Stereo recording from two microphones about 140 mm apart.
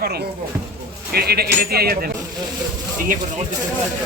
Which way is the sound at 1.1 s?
90° right.